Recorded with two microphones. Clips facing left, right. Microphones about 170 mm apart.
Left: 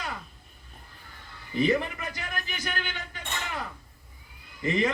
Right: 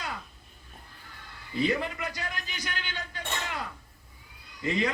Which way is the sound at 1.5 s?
20° left (ahead or behind).